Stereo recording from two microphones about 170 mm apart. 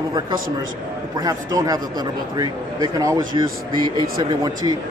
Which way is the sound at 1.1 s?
20° right (ahead or behind).